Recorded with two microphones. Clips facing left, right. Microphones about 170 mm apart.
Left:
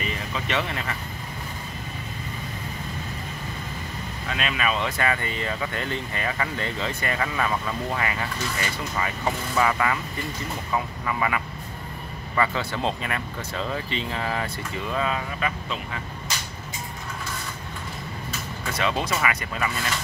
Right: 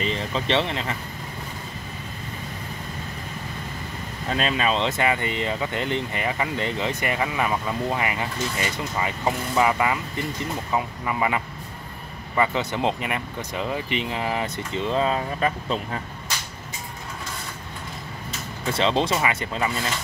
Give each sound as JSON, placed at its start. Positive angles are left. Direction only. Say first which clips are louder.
{"t": 0.0, "sound": "speech", "louder": "right 4 dB", "side_deg": -30}
{"t": 4.3, "sound": "speech", "louder": "right 4 dB", "side_deg": -35}
{"t": 18.7, "sound": "speech", "louder": "right 4 dB", "side_deg": -25}